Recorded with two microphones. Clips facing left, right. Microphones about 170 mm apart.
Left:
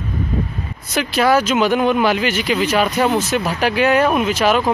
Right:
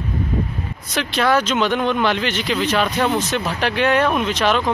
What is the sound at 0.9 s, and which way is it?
Speech, 5° left (ahead or behind).